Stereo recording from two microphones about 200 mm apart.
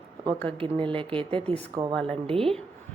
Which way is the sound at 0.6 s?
25° right (ahead or behind).